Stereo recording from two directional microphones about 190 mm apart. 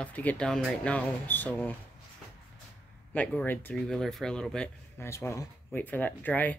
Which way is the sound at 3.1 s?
5° left (ahead or behind).